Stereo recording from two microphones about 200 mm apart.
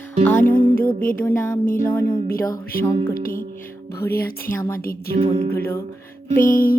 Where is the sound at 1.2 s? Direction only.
10° left (ahead or behind).